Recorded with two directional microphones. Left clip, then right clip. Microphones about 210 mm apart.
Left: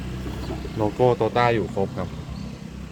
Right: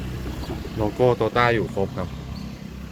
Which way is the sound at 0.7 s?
5° left (ahead or behind).